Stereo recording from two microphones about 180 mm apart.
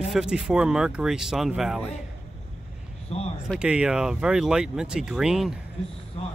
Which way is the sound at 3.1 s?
35° left (ahead or behind).